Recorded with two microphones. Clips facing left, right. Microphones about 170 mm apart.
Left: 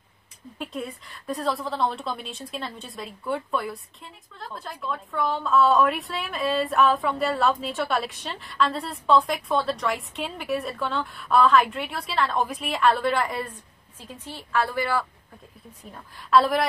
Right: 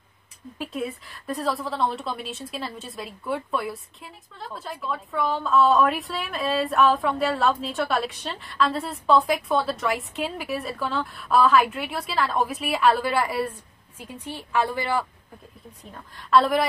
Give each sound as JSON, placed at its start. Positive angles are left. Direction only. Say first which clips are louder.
{"t": 0.6, "sound": "a woman's voice", "louder": "right 3 dB", "side_deg": 0}
{"t": 15.9, "sound": "a woman's voice", "louder": "even", "side_deg": 0}